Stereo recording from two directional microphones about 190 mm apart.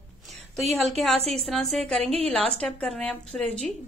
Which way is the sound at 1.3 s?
Centre (ahead or behind).